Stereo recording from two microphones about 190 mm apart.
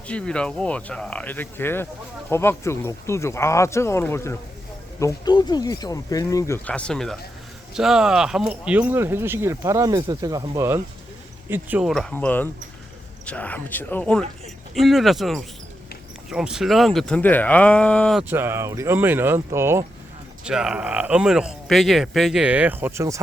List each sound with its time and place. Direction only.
0.1 s speech: 5° left (ahead or behind)
18.3 s speech: 10° right (ahead or behind)
20.4 s speech: 5° right (ahead or behind)